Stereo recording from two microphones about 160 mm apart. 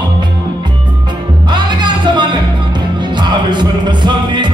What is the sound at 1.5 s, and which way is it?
Music, 30° right (ahead or behind).